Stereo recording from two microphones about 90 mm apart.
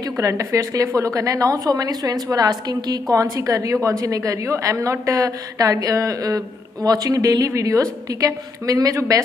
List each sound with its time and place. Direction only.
0.0 s speech: 35° right (ahead or behind)